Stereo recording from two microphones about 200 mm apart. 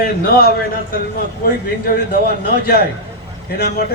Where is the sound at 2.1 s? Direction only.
50° left (ahead or behind).